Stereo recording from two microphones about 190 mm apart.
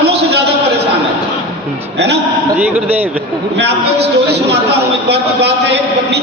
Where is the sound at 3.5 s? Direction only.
60° right (ahead or behind).